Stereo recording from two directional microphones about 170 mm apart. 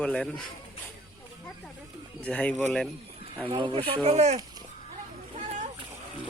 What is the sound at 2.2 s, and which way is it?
Speech, 5° left (ahead or behind).